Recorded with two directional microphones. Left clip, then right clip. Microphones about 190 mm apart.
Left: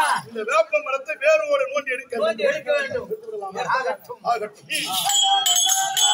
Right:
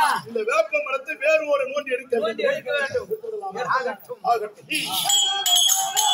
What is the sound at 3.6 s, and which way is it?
Speech, 30° left (ahead or behind).